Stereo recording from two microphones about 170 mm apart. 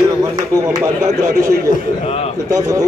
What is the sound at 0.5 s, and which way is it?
Speech, 15° right (ahead or behind).